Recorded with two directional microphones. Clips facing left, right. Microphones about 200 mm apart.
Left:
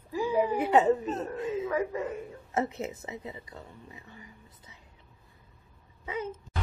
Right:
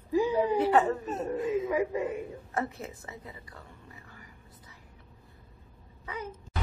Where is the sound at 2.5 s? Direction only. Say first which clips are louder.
Left 4 dB; 20° left (ahead or behind).